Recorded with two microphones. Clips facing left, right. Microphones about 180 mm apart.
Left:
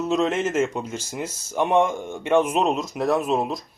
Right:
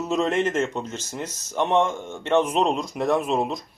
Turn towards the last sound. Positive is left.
turn(degrees=0)  # may be behind; listen again after turning